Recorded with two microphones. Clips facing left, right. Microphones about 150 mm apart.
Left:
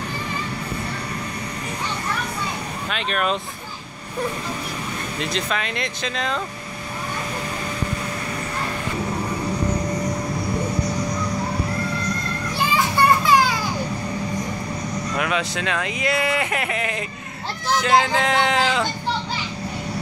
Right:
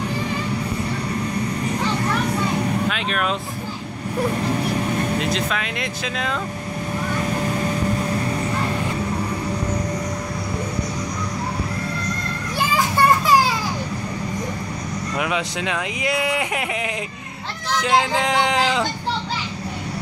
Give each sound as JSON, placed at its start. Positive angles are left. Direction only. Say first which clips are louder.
{"t": 2.9, "sound": "speech", "louder": "even", "side_deg": -5}
{"t": 5.2, "sound": "speech", "louder": "right 2 dB", "side_deg": -5}
{"t": 12.7, "sound": "children playing", "louder": "right 1 dB", "side_deg": -40}
{"t": 15.1, "sound": "speech", "louder": "right 1 dB", "side_deg": -15}